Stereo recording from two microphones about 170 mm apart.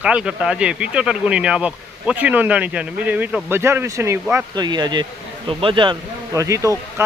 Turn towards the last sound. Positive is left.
turn(degrees=-20)  # may be behind; listen again after turning